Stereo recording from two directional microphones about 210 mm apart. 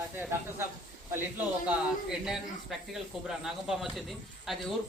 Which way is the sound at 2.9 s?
Centre (ahead or behind).